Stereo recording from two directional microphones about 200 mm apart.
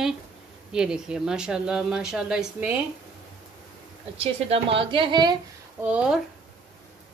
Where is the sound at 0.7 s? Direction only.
5° right (ahead or behind).